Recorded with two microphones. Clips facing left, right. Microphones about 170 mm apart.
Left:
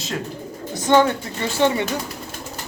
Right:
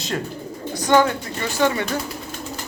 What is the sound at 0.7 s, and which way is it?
Speech, 25° left (ahead or behind).